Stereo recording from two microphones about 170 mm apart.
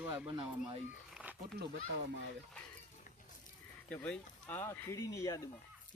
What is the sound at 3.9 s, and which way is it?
Speech, 10° left (ahead or behind).